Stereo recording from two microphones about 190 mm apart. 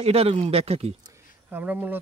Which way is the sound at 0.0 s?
30° right (ahead or behind).